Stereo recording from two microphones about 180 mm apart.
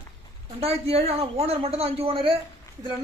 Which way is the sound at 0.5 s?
35° right (ahead or behind).